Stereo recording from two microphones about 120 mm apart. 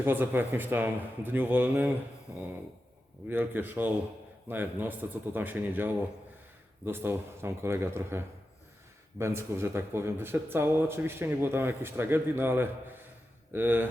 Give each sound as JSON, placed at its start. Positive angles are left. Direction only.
{"t": 0.0, "sound": "speech", "side_deg": -15}